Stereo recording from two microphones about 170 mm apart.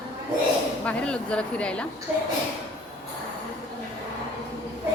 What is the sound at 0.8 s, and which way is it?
A woman's voice, 5° left (ahead or behind).